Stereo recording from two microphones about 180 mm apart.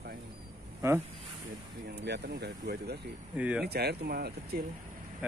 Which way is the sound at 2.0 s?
65° right (ahead or behind).